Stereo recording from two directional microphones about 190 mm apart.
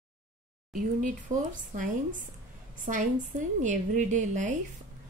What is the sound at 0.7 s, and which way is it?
A woman's voice, 45° right (ahead or behind).